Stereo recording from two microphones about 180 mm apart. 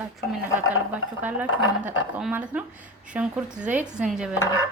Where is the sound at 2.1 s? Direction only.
5° right (ahead or behind).